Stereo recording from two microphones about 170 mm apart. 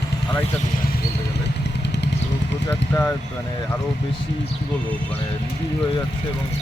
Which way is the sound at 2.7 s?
10° left (ahead or behind).